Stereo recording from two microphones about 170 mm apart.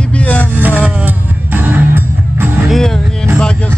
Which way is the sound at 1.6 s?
10° right (ahead or behind).